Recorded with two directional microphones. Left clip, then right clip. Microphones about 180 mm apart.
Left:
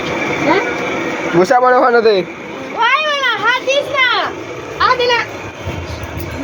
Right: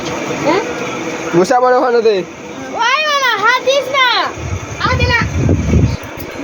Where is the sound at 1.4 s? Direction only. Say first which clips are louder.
Even; 25° right (ahead or behind); by 2.2 s 10° right (ahead or behind).